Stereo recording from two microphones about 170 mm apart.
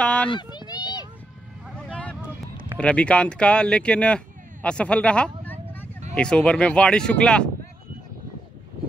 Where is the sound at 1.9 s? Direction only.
5° left (ahead or behind).